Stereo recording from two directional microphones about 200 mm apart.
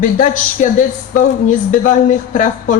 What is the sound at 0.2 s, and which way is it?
Speech, 40° left (ahead or behind).